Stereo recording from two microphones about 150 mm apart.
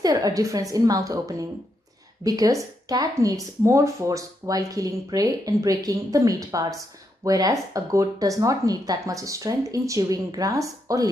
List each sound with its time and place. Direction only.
0.0 s speech: 25° right (ahead or behind)